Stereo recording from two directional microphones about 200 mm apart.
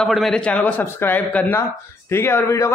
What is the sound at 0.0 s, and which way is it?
Speech, centre (ahead or behind).